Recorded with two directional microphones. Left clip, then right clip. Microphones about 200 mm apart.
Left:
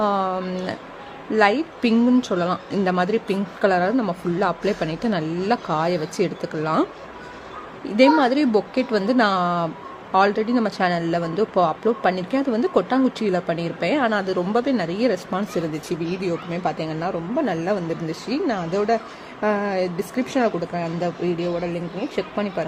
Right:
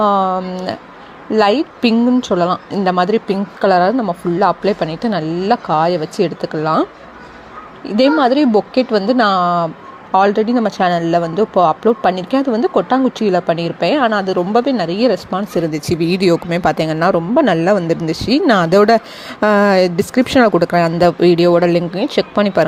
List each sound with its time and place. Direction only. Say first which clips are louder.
0.0 s a sound: right 8 dB; 15° right (ahead or behind)
1.3 s speech: right 5 dB; 15° right (ahead or behind)
7.9 s speech: right 4 dB; 15° right (ahead or behind)
15.7 s speech: right 10 dB; 35° right (ahead or behind)